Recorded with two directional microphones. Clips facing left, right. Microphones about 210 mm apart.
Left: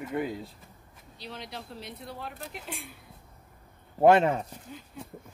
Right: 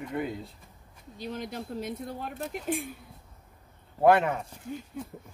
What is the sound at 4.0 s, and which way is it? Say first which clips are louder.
Speech: left 2 dB; 25° left (ahead or behind).